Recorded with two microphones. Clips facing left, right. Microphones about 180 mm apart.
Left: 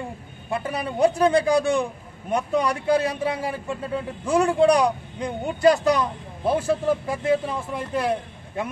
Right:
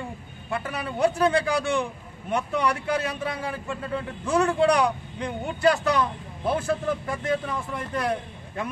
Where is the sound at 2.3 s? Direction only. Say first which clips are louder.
Left 2 dB; 35° left (ahead or behind).